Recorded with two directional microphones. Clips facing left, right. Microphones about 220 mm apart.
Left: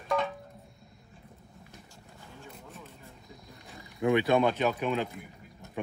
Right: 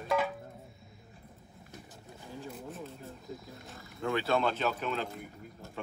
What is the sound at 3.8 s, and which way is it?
Speech, 15° left (ahead or behind).